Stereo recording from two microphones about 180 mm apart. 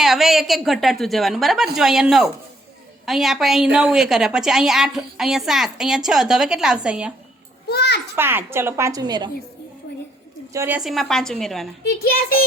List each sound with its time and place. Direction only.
0.0 s a woman's voice: centre (ahead or behind)
7.7 s a child's voice: 65° left (ahead or behind)
8.1 s a woman's voice: 10° right (ahead or behind)
10.5 s a woman's voice: 15° right (ahead or behind)
10.8 s a woman's voice: centre (ahead or behind)
11.8 s a child's voice: 60° left (ahead or behind)